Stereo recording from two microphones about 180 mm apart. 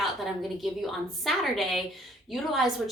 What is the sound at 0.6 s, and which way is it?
Speech, centre (ahead or behind).